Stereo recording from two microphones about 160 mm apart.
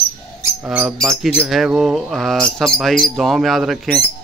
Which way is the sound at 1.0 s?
Centre (ahead or behind).